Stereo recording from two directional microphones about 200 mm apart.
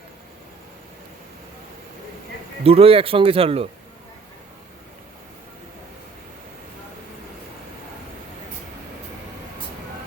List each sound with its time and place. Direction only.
2.6 s speech: 30° right (ahead or behind)